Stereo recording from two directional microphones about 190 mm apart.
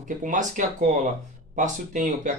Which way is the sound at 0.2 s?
40° right (ahead or behind).